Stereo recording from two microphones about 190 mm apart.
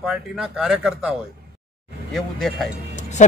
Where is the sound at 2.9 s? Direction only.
40° left (ahead or behind).